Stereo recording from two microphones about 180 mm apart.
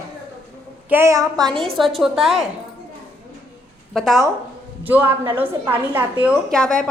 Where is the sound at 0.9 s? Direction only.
15° right (ahead or behind).